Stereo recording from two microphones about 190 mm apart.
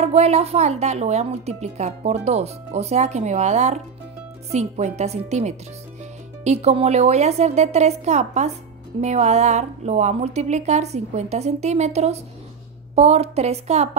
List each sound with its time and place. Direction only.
0.0 s speech: 35° right (ahead or behind)